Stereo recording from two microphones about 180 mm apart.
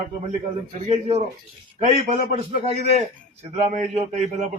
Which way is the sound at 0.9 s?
35° right (ahead or behind).